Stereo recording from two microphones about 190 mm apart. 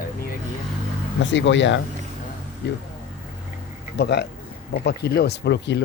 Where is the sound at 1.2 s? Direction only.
75° left (ahead or behind).